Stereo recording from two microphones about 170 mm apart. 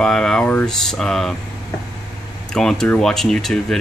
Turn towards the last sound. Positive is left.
turn(degrees=5)  # may be behind; listen again after turning